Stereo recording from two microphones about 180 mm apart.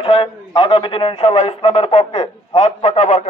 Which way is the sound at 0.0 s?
30° left (ahead or behind).